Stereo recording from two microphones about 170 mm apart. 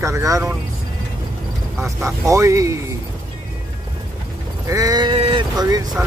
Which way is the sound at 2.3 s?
20° right (ahead or behind).